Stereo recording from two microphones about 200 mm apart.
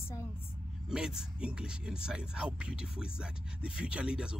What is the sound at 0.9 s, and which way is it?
Speech, 5° right (ahead or behind).